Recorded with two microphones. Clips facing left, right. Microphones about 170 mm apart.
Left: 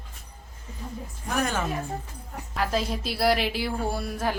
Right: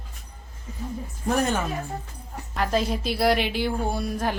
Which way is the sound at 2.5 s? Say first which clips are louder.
Right 3 dB; centre (ahead or behind).